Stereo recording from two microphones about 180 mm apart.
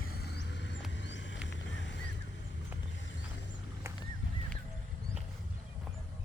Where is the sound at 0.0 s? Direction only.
60° left (ahead or behind); by 1.4 s 90° left.